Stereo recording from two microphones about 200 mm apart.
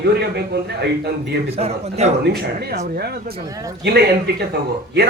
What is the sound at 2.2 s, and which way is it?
A man's voice, 50° right (ahead or behind).